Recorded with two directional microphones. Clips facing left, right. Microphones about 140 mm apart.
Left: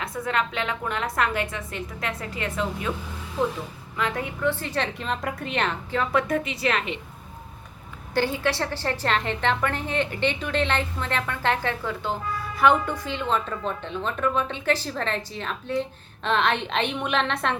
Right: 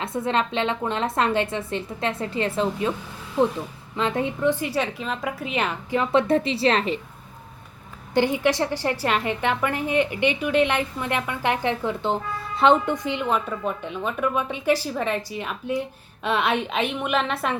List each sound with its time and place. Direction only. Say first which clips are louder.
0.0 s a woman's voice: right 3 dB; 25° right (ahead or behind)
3.9 s a woman's voice: right 4 dB; 25° right (ahead or behind); by 6.0 s 5° right (ahead or behind)
6.0 s a woman's voice: right 4 dB; 25° right (ahead or behind)
8.1 s a woman's voice: right 4 dB; 15° right (ahead or behind)